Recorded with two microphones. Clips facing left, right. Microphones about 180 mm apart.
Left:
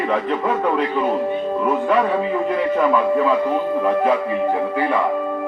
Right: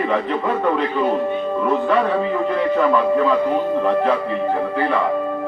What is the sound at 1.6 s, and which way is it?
A man's voice, 5° left (ahead or behind).